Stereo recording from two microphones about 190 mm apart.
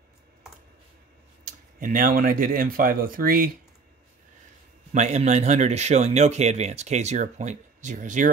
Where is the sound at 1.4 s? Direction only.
45° right (ahead or behind).